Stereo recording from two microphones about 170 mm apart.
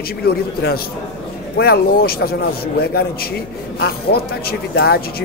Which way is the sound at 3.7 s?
65° left (ahead or behind).